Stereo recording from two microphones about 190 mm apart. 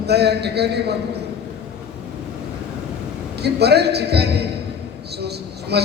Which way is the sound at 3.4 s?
60° right (ahead or behind).